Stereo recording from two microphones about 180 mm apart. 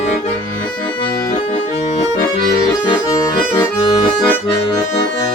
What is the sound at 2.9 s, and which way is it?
Accordion, 25° left (ahead or behind).